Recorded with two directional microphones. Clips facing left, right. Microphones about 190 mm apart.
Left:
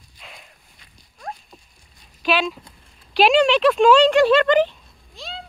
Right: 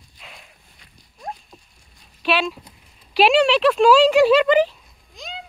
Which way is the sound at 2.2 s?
Centre (ahead or behind).